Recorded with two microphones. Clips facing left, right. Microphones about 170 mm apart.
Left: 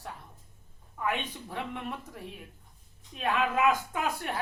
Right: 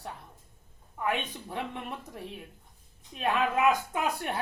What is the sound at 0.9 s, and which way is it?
Speech, 20° right (ahead or behind).